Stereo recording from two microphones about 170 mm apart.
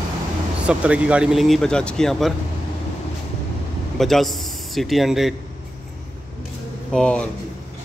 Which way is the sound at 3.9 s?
Centre (ahead or behind).